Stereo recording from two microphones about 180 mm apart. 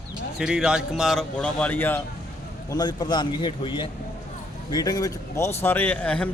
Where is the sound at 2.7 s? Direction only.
25° left (ahead or behind).